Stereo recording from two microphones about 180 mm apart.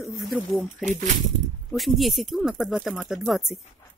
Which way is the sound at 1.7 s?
Centre (ahead or behind).